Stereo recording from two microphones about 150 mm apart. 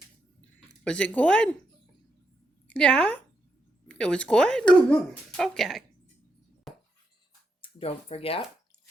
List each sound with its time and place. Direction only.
0.9 s speech: 10° left (ahead or behind)
2.6 s a woman's voice: 5° left (ahead or behind)
7.6 s speech: 40° left (ahead or behind)